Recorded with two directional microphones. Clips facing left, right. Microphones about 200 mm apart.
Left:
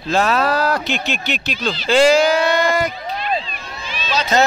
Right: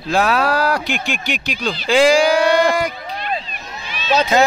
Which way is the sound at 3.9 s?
60° right (ahead or behind).